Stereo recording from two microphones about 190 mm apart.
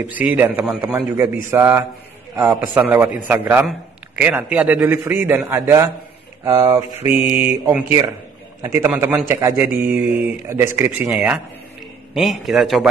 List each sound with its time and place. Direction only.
0.0 s a man's voice: 10° right (ahead or behind)